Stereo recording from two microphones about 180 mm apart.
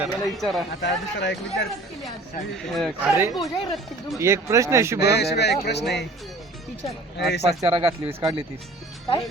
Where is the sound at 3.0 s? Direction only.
10° right (ahead or behind).